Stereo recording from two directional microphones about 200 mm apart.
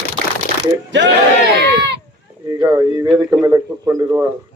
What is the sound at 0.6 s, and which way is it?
Speech, 60° right (ahead or behind).